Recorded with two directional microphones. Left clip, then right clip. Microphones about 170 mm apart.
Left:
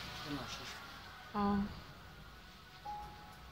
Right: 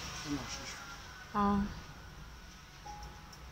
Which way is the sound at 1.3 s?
Centre (ahead or behind).